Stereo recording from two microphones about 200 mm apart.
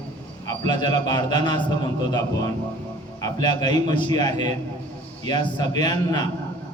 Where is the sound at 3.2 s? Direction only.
20° left (ahead or behind).